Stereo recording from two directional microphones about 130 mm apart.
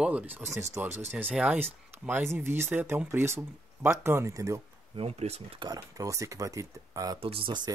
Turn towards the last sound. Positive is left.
turn(degrees=-40)  # may be behind; listen again after turning